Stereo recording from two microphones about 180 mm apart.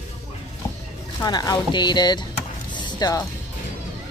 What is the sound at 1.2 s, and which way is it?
Speech, 20° left (ahead or behind).